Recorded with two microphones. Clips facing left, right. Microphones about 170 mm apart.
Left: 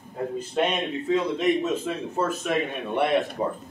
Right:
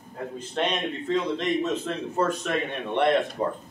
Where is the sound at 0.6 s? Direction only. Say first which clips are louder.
Left 2 dB; 10° left (ahead or behind).